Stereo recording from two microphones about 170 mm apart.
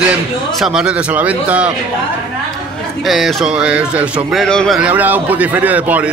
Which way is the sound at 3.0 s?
5° right (ahead or behind).